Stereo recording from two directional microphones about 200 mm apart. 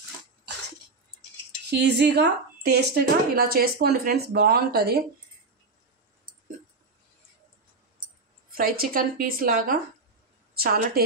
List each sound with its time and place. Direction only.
1.7 s a woman's voice: 55° right (ahead or behind)
8.5 s a woman's voice: 45° right (ahead or behind)